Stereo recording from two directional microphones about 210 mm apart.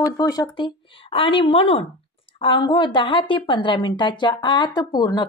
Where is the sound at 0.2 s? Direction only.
20° left (ahead or behind).